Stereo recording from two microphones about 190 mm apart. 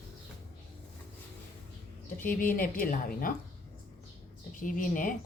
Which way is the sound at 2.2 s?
45° left (ahead or behind).